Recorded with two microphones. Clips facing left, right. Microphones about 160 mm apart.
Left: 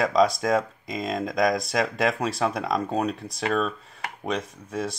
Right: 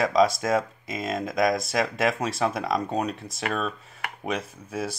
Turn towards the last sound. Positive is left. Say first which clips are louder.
# left 1 dB
turn(degrees=-5)  # may be behind; listen again after turning